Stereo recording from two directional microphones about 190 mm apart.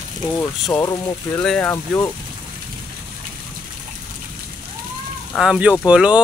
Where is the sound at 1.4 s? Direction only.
5° left (ahead or behind).